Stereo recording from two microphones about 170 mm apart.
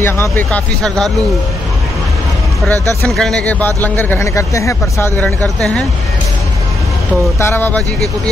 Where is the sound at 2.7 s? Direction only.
20° right (ahead or behind).